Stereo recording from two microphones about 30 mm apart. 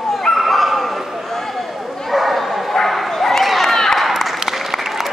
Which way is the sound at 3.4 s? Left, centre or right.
Centre.